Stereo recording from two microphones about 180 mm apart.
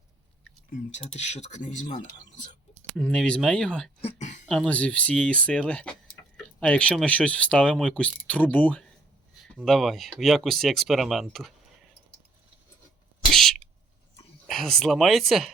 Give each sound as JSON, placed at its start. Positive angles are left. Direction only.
{"t": 0.9, "sound": "speech", "side_deg": 40}
{"t": 2.9, "sound": "speech", "side_deg": 5}
{"t": 4.0, "sound": "a sound", "side_deg": 35}
{"t": 4.4, "sound": "speech", "side_deg": 5}
{"t": 13.3, "sound": "a sound", "side_deg": 0}
{"t": 14.4, "sound": "speech", "side_deg": 0}